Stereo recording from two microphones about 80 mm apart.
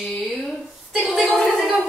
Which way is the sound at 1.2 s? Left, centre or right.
Centre.